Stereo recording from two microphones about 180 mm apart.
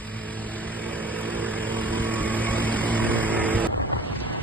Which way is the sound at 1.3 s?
10° right (ahead or behind).